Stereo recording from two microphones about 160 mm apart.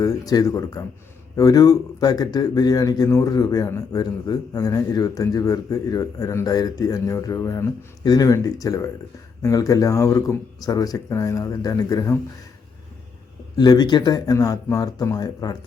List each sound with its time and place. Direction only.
0.0 s speech: 20° left (ahead or behind)
13.6 s speech: 25° left (ahead or behind)